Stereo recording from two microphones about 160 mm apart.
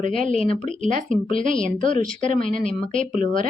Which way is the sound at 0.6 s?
50° right (ahead or behind).